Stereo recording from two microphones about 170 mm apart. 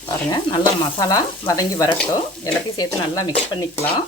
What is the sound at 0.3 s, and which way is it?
Speech, 25° left (ahead or behind).